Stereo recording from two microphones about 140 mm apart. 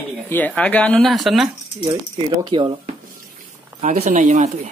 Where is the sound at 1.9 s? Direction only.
25° right (ahead or behind).